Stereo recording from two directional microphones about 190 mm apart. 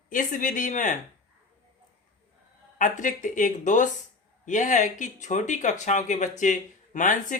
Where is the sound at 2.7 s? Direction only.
40° left (ahead or behind).